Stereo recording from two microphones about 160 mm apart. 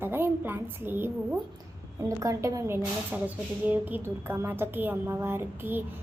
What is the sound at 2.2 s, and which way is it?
A child's voice, 20° right (ahead or behind).